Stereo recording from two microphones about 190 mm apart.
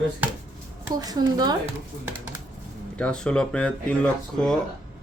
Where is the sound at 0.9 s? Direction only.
20° right (ahead or behind).